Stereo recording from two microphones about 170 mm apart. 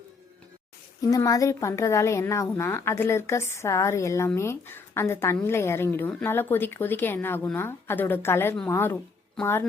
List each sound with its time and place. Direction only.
1.1 s a woman's voice: 20° left (ahead or behind)